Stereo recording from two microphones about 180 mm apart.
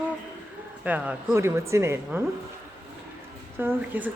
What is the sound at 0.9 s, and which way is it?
A woman's voice, 10° right (ahead or behind).